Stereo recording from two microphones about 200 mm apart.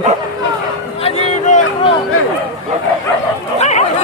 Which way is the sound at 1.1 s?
35° left (ahead or behind).